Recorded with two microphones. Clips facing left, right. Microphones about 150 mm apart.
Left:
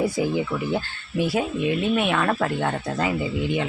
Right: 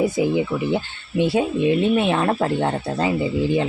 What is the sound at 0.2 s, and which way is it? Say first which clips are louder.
Speech: right 4 dB; 20° right (ahead or behind).